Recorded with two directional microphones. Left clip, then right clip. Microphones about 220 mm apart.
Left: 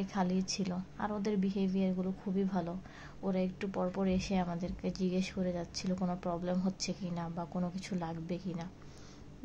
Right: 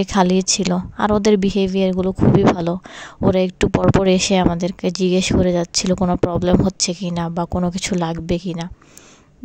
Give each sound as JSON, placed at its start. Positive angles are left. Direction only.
{"t": 0.0, "sound": "speech", "side_deg": -45}